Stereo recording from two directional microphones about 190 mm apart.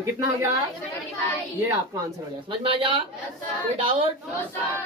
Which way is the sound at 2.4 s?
30° right (ahead or behind).